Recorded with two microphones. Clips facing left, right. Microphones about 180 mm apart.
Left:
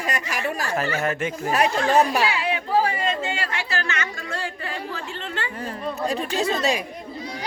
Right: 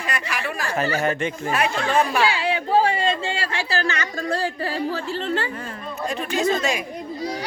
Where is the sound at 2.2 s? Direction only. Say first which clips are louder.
Right 2 dB; 30° right (ahead or behind).